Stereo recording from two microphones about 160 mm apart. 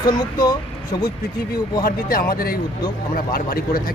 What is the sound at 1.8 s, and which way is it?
Speech, 65° left (ahead or behind).